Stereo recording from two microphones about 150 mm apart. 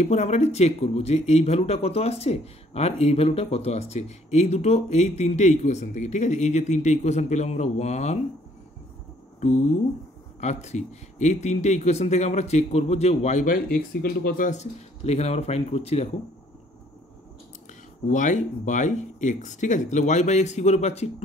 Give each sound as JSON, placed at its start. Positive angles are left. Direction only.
{"t": 0.0, "sound": "speech", "side_deg": 50}
{"t": 10.4, "sound": "speech", "side_deg": 50}
{"t": 18.0, "sound": "speech", "side_deg": 55}